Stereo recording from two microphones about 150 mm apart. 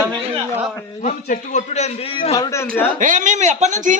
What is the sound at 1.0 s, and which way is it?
A man's voice, 55° left (ahead or behind).